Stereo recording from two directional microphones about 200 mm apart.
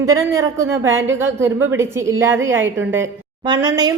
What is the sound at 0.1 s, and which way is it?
A woman's voice, 15° right (ahead or behind).